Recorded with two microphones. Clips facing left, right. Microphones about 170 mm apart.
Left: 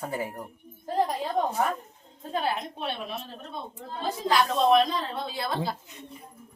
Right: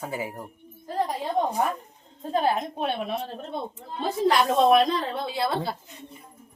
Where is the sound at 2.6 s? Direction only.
45° right (ahead or behind).